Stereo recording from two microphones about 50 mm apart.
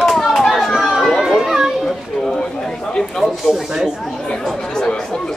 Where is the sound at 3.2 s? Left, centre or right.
Right.